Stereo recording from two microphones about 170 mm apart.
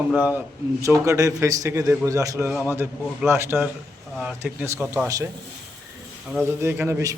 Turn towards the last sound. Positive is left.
turn(degrees=-15)  # may be behind; listen again after turning